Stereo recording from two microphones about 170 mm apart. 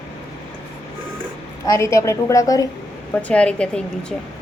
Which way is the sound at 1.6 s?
15° left (ahead or behind).